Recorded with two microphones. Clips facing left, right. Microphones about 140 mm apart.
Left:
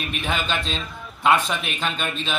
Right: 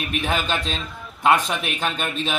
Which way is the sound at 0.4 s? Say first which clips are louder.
Right 1 dB; 45° right (ahead or behind).